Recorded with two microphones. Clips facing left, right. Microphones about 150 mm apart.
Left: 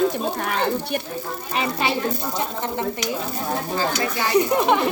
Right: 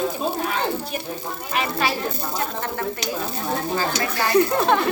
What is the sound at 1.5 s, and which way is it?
Speech, 25° left (ahead or behind).